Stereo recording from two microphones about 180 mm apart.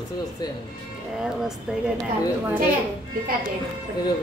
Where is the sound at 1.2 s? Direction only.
5° right (ahead or behind).